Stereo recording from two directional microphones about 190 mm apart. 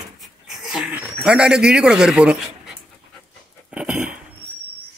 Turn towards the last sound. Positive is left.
turn(degrees=-5)  # may be behind; listen again after turning